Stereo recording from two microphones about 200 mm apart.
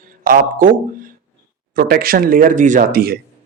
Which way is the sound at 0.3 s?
45° right (ahead or behind).